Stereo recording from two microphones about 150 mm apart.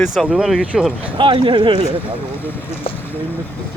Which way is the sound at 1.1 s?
35° right (ahead or behind).